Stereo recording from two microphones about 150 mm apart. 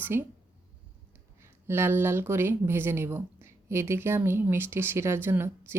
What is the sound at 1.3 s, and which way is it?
Speech, 15° right (ahead or behind).